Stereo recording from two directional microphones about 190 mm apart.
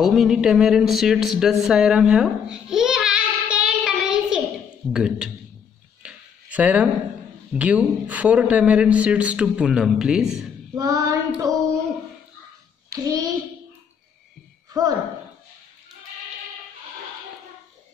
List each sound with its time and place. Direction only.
0.0 s speech: centre (ahead or behind)
1.4 s babbling: centre (ahead or behind)
4.9 s speech: 5° right (ahead or behind)
6.0 s a sound: 5° right (ahead or behind)
7.5 s a man's voice: 5° right (ahead or behind)
10.8 s child singing: 20° right (ahead or behind)
12.9 s a child's voice: 20° right (ahead or behind)
14.7 s speech: 20° right (ahead or behind)